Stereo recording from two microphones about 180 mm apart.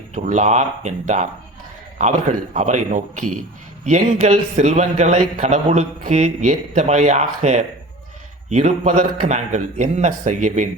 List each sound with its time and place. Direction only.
0.1 s a man's voice: 40° right (ahead or behind)